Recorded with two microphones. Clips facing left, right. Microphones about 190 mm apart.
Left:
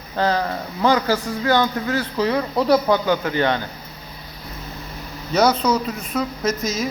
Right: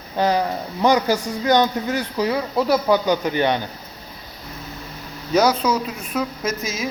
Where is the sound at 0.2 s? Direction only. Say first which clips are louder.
Right 1 dB; 15° right (ahead or behind).